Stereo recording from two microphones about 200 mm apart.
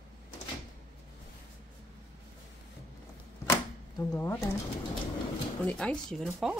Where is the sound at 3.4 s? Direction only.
15° left (ahead or behind).